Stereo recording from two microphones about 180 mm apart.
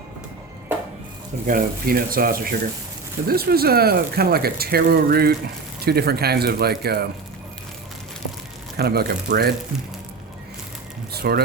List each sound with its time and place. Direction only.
1.5 s speech: 55° right (ahead or behind)
8.7 s speech: 60° right (ahead or behind)
11.1 s speech: 60° right (ahead or behind)